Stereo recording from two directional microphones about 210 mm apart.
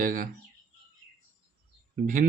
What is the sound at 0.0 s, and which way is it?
Speech, 40° right (ahead or behind).